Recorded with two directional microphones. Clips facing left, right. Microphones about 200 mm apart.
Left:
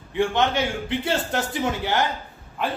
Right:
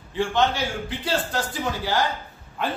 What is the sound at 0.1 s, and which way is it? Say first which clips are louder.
A man's voice: left 1 dB; 20° left (ahead or behind).